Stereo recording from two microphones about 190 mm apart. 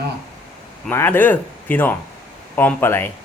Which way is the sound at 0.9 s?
10° left (ahead or behind).